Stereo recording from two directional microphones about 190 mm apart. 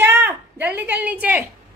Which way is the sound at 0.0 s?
10° right (ahead or behind).